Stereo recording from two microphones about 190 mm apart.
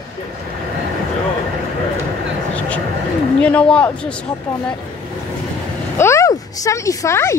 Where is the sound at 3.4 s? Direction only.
5° left (ahead or behind).